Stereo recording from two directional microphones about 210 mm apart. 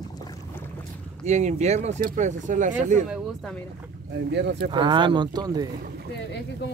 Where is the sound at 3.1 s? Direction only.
5° left (ahead or behind).